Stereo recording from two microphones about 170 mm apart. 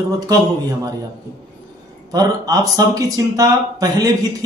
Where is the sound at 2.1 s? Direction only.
20° right (ahead or behind).